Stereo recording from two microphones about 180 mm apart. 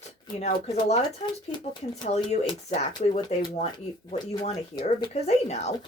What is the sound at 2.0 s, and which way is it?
Speech, 40° left (ahead or behind).